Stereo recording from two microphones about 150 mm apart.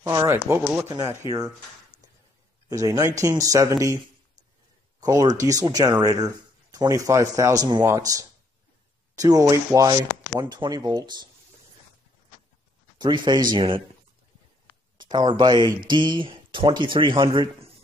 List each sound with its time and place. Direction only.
0.0 s speech: 20° right (ahead or behind)
2.7 s speech: 25° right (ahead or behind)
5.0 s speech: 25° right (ahead or behind)
13.0 s speech: 30° right (ahead or behind)
15.0 s speech: 30° right (ahead or behind)